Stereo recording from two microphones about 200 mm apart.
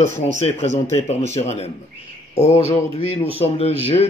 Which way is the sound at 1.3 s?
35° left (ahead or behind).